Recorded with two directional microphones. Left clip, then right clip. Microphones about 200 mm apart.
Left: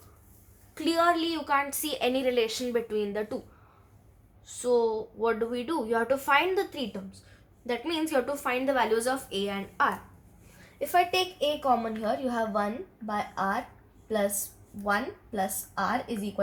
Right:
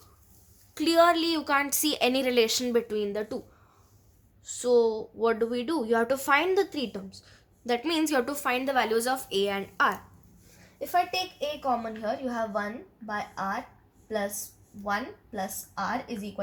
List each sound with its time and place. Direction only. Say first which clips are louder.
0.7 s a woman's voice: right 3 dB; 50° right (ahead or behind); by 3.3 s 30° right (ahead or behind)
4.4 s a woman's voice: right 2 dB; 35° right (ahead or behind)
7.7 s a woman's voice: right 2 dB; 50° right (ahead or behind)
10.8 s a woman's voice: left 2 dB; 10° right (ahead or behind)
14.8 s a woman's voice: left 2 dB; 5° right (ahead or behind)